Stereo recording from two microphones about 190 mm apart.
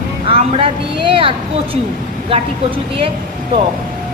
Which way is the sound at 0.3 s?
30° right (ahead or behind).